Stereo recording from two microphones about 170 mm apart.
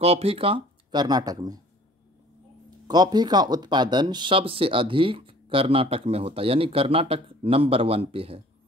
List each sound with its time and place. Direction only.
0.0 s speech: 35° right (ahead or behind)
2.9 s speech: 25° right (ahead or behind)